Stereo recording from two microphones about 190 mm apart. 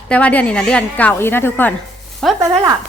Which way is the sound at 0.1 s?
5° left (ahead or behind).